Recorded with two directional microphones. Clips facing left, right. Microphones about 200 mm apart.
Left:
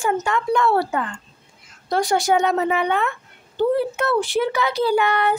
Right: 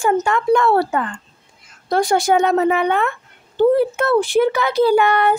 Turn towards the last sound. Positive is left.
turn(degrees=-50)  # may be behind; listen again after turning